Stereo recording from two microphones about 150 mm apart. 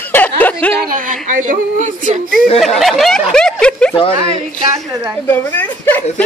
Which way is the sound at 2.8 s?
Centre (ahead or behind).